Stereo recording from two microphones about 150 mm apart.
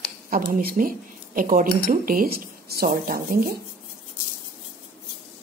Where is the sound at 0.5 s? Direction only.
65° right (ahead or behind).